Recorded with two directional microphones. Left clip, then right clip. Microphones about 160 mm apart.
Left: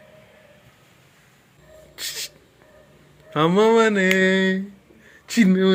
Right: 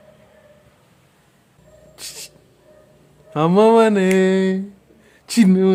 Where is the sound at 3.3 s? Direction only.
25° right (ahead or behind).